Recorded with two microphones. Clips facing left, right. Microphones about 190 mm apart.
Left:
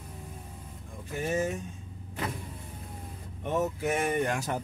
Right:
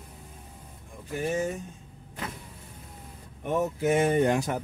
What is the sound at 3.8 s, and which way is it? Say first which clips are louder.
Speech: right 5 dB; 20° right (ahead or behind).